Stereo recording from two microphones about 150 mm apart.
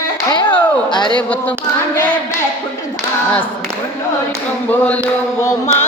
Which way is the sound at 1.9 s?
10° left (ahead or behind).